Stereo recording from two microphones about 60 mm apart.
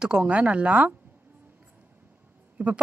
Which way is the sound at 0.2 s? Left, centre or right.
Right.